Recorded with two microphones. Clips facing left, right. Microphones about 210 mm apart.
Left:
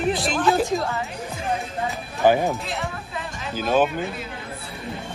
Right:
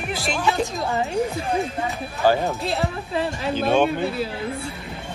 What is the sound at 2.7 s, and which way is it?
Speech, 30° right (ahead or behind).